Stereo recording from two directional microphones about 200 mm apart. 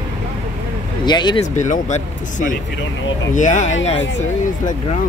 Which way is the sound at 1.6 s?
35° left (ahead or behind).